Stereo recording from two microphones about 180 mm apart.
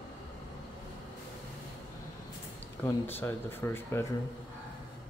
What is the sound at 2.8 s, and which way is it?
Speech, 10° left (ahead or behind).